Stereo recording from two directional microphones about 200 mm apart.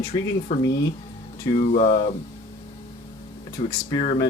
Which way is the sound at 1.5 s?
30° left (ahead or behind).